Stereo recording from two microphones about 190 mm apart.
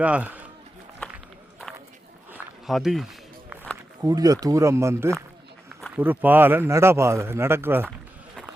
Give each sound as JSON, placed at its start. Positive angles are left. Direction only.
{"t": 0.0, "sound": "speech", "side_deg": -5}
{"t": 2.3, "sound": "walk", "side_deg": 0}
{"t": 4.0, "sound": "speech", "side_deg": -20}